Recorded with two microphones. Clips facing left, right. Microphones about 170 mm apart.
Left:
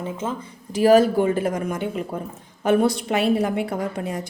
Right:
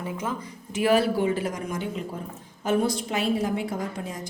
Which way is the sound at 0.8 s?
40° left (ahead or behind).